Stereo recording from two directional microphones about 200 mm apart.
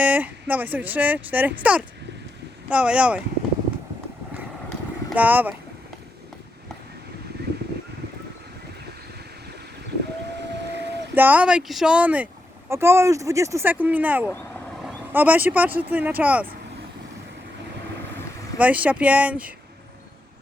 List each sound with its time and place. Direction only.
0.0 s speech: 10° right (ahead or behind)
5.0 s speech: 10° right (ahead or behind)
7.4 s a sound: 55° right (ahead or behind)
11.1 s speech: 10° right (ahead or behind)
18.5 s speech: 5° right (ahead or behind)